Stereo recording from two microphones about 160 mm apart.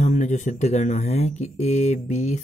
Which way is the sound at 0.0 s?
45° left (ahead or behind).